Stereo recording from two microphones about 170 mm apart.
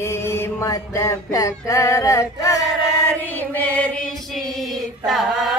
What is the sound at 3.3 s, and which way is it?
Chant, 10° left (ahead or behind).